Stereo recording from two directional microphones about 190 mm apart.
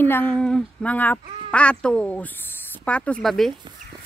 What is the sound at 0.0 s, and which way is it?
Speech, 10° left (ahead or behind).